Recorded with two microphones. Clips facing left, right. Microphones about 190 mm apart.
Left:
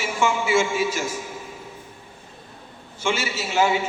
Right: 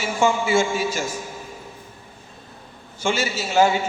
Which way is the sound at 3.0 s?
40° right (ahead or behind).